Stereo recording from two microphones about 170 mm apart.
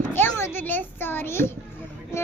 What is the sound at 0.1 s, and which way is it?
A child's voice, 15° left (ahead or behind).